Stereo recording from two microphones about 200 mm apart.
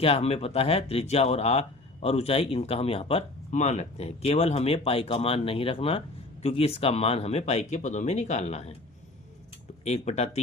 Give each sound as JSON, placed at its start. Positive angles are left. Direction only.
{"t": 0.0, "sound": "speech", "side_deg": 30}
{"t": 9.8, "sound": "speech", "side_deg": 35}